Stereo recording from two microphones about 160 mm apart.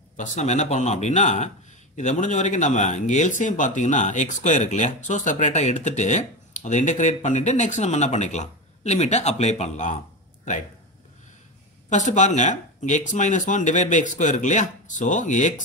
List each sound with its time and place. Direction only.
0.2 s speech: 45° left (ahead or behind)
11.9 s speech: 50° left (ahead or behind)